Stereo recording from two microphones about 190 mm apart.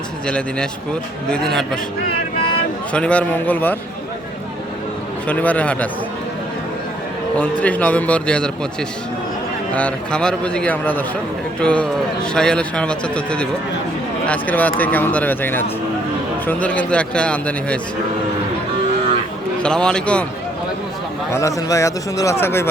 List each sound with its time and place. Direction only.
0.3 s a man's voice: 5° left (ahead or behind)
2.9 s a man's voice: 5° left (ahead or behind)
5.3 s a man's voice: 10° left (ahead or behind)
7.3 s a man's voice: 5° left (ahead or behind)
9.7 s a man's voice: 5° left (ahead or behind)
19.6 s a man's voice: 5° left (ahead or behind)
21.3 s a man's voice: 15° left (ahead or behind)